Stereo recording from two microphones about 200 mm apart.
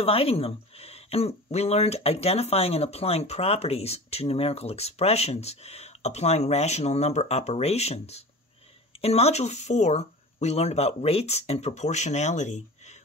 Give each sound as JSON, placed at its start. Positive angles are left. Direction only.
{"t": 0.0, "sound": "speech", "side_deg": 30}